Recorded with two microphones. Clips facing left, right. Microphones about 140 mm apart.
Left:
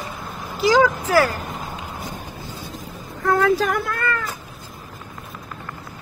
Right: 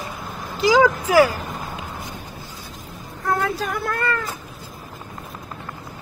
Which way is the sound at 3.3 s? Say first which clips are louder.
Left 5 dB; 90° left.